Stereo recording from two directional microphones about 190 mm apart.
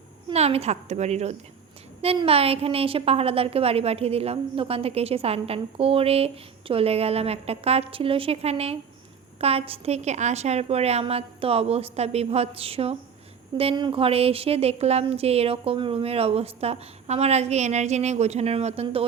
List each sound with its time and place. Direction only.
0.3 s a woman's voice: 35° right (ahead or behind)